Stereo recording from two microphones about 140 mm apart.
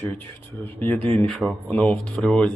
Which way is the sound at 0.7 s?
15° left (ahead or behind).